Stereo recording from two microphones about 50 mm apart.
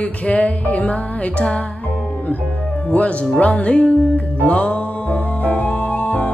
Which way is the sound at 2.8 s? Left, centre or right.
Left.